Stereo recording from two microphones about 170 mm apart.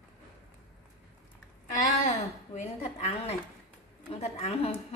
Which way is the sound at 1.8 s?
45° left (ahead or behind).